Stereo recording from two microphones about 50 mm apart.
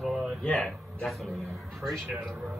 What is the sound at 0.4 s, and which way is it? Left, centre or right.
Speech, centre.